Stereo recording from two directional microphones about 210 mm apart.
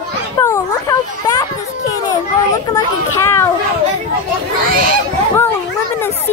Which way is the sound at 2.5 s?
15° left (ahead or behind).